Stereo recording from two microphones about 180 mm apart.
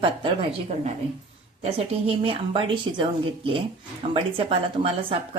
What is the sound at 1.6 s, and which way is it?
A woman's voice, 35° right (ahead or behind).